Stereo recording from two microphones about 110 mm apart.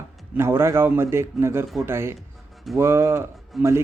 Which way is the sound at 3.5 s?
Centre (ahead or behind).